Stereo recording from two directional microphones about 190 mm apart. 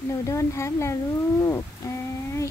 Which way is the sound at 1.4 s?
15° left (ahead or behind).